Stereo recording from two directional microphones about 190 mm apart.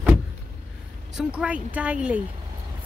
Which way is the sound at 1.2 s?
5° right (ahead or behind).